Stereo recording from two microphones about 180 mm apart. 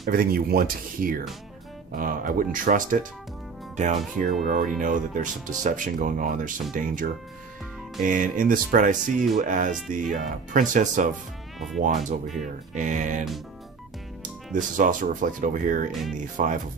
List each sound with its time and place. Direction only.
0.1 s speech: 55° right (ahead or behind)
8.0 s speech: 50° right (ahead or behind)
14.5 s speech: 45° right (ahead or behind)
15.9 s speech: centre (ahead or behind)
16.4 s speech: 45° right (ahead or behind)